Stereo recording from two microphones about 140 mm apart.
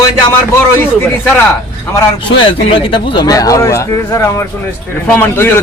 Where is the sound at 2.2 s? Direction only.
35° left (ahead or behind).